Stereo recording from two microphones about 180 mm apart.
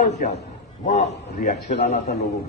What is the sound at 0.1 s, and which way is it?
A man's voice, 40° left (ahead or behind).